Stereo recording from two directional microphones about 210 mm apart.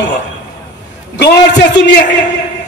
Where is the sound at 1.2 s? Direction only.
55° left (ahead or behind).